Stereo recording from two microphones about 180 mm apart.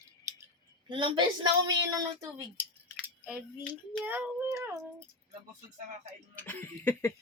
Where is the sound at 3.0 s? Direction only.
5° right (ahead or behind).